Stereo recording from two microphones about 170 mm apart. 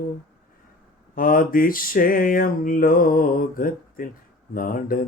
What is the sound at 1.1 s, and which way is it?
Mantra, 55° left (ahead or behind).